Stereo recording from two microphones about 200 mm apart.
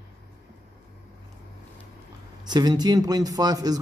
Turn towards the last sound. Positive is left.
turn(degrees=-20)  # may be behind; listen again after turning